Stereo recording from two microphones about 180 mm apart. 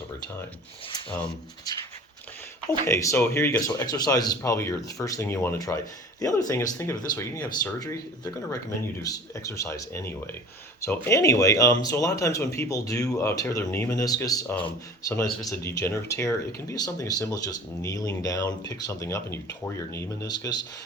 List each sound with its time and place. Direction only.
1.1 s speech: 5° left (ahead or behind)
2.8 s speech: 15° left (ahead or behind)